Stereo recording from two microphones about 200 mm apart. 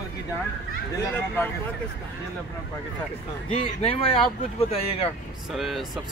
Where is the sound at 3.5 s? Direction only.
25° left (ahead or behind).